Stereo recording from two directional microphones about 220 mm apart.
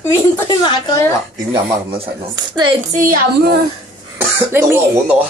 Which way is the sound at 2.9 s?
40° right (ahead or behind).